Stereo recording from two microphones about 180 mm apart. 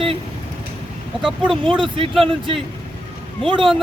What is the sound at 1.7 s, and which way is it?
Speech, 30° right (ahead or behind).